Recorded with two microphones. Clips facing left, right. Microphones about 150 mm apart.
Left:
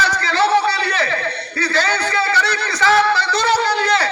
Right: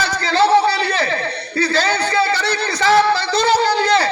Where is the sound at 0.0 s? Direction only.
30° right (ahead or behind).